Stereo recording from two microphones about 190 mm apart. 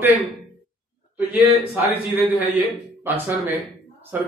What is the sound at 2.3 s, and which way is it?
A man's voice, 10° right (ahead or behind).